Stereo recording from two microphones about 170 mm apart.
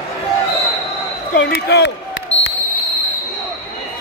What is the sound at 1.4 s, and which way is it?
Speech, 85° left.